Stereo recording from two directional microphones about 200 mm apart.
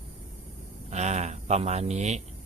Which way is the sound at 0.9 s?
35° right (ahead or behind).